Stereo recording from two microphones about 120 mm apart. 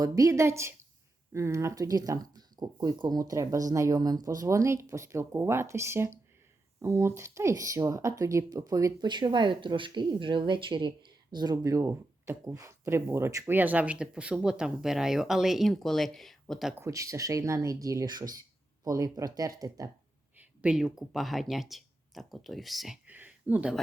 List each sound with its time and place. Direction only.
0.0 s speech: 25° right (ahead or behind); by 16.7 s centre (ahead or behind)
16.7 s speech: 25° right (ahead or behind)
20.4 s speech: 10° right (ahead or behind)
23.0 s a sound: 15° right (ahead or behind)